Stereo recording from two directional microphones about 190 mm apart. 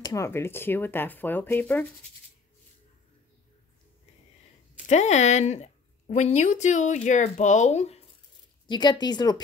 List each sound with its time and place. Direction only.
0.0 s speech: 15° left (ahead or behind)
4.8 s a woman's voice: 35° left (ahead or behind)
8.6 s speech: 25° left (ahead or behind)